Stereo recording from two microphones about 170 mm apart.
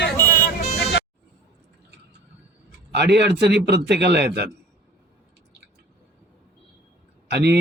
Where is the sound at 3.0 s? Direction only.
80° right.